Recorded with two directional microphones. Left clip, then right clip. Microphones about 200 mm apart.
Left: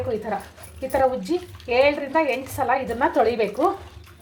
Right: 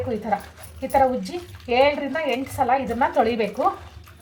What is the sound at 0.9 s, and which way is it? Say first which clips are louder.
Speech: right 1 dB; 30° left (ahead or behind).